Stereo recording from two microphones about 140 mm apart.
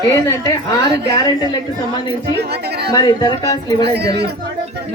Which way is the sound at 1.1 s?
30° left (ahead or behind).